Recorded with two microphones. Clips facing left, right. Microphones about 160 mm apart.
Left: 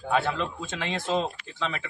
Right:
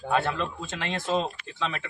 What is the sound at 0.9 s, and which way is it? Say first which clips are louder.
Speech: even; 15° left (ahead or behind).